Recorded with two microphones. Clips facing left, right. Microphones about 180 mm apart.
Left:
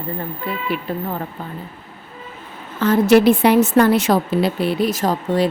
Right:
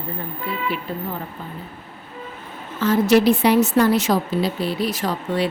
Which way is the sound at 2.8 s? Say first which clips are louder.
Left 3 dB; 55° left (ahead or behind).